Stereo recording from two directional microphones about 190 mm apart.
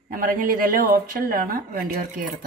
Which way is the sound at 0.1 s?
45° right (ahead or behind).